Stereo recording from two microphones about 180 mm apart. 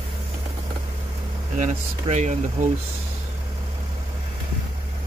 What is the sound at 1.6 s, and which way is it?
Speech, 40° right (ahead or behind).